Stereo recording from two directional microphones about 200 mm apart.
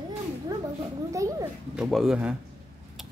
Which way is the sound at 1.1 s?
15° right (ahead or behind).